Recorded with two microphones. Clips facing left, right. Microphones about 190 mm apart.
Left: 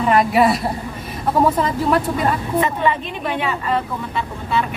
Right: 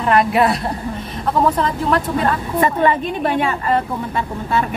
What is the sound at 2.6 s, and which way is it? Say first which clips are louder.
A woman's voice: right 7 dB; 45° right (ahead or behind).